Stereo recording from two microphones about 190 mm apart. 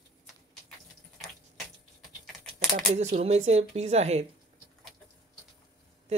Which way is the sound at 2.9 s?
35° right (ahead or behind).